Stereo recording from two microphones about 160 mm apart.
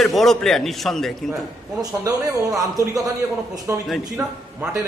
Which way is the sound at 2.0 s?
20° right (ahead or behind).